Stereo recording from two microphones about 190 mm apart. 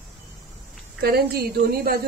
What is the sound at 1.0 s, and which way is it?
A woman's voice, 55° right (ahead or behind).